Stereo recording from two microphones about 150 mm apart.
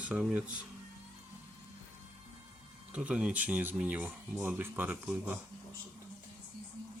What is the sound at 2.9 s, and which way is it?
Speech, 10° right (ahead or behind).